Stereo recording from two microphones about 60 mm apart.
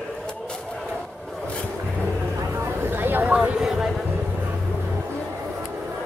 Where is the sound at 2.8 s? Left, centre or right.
Right.